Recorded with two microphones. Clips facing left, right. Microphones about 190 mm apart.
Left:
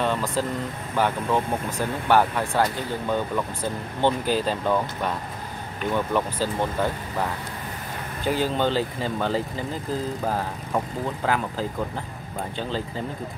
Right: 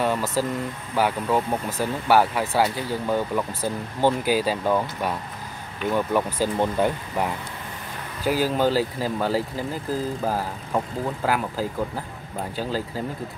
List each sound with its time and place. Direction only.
0.0 s speech: 5° right (ahead or behind)
8.2 s speech: 5° right (ahead or behind)